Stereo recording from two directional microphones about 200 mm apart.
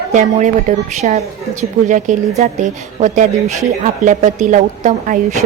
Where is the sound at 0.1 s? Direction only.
40° right (ahead or behind).